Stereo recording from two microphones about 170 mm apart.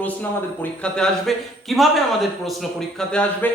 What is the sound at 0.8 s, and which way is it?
A man's voice, 5° left (ahead or behind).